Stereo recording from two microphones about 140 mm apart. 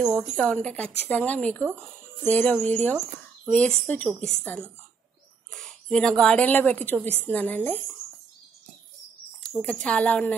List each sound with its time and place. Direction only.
0.2 s a woman's voice: 5° left (ahead or behind)
1.6 s speech: 15° right (ahead or behind)
2.2 s a woman's voice: 10° left (ahead or behind)
5.5 s a woman's voice: 5° left (ahead or behind)
9.4 s speech: 5° left (ahead or behind)